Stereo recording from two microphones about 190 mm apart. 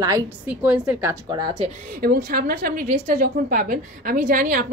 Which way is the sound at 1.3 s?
20° right (ahead or behind).